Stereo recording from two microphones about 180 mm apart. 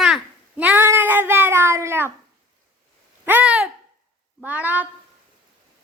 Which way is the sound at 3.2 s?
10° right (ahead or behind).